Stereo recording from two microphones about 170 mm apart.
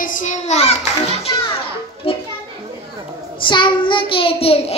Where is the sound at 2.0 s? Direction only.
35° left (ahead or behind).